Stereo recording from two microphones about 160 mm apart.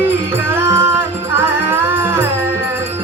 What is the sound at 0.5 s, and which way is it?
Music, 15° right (ahead or behind).